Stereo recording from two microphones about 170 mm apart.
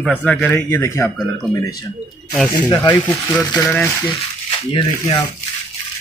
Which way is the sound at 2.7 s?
25° left (ahead or behind).